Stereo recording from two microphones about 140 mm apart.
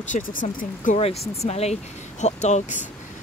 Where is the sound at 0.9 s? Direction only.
45° left (ahead or behind).